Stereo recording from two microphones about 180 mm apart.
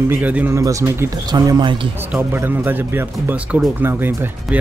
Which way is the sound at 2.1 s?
10° right (ahead or behind).